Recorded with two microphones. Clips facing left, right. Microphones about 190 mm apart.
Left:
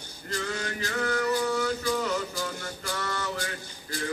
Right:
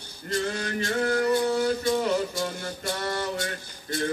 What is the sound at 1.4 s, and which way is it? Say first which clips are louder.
Music: right 3 dB; 30° right (ahead or behind).